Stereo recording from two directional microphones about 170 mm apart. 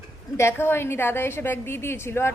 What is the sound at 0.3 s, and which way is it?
A woman's voice, 15° left (ahead or behind).